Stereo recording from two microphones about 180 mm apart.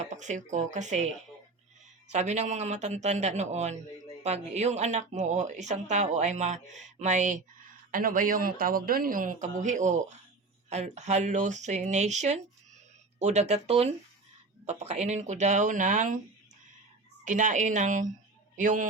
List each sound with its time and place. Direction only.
0.0 s a woman's voice: 40° right (ahead or behind)
2.1 s a woman's voice: 40° right (ahead or behind)
17.2 s a man's voice: 45° right (ahead or behind)